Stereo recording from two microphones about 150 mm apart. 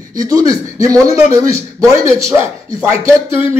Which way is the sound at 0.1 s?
25° right (ahead or behind).